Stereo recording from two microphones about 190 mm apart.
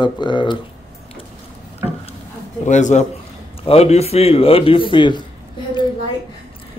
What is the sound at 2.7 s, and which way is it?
Speech, 40° left (ahead or behind).